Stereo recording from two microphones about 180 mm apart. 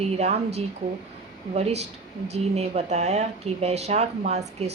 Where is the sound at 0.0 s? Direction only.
35° right (ahead or behind).